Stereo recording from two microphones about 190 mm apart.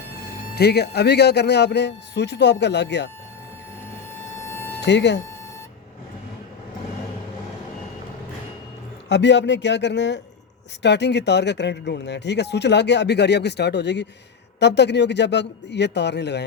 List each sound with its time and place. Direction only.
0.5 s speech: 60° left (ahead or behind)
4.4 s a sound: 15° left (ahead or behind)
4.8 s speech: 65° left (ahead or behind)
9.0 s a man's voice: 65° left (ahead or behind)